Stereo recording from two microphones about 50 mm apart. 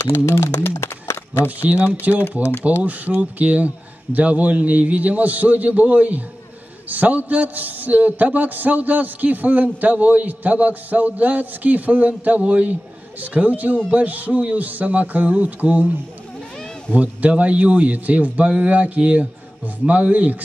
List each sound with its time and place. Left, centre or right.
0.2 s speech: left
0.6 s speech: left
2.0 s a man's voice: right
16.9 s a man's voice: right